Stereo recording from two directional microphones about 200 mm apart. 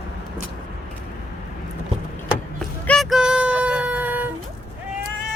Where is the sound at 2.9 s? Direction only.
Centre (ahead or behind).